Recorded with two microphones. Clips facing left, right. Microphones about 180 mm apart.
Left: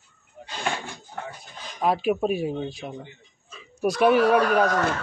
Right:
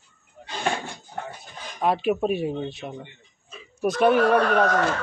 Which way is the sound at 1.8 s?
Centre (ahead or behind).